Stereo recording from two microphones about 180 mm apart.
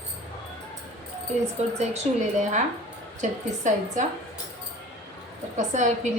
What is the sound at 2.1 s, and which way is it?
A woman's voice, 35° right (ahead or behind).